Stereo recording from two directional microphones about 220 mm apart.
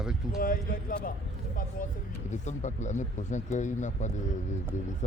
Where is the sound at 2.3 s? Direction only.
30° left (ahead or behind).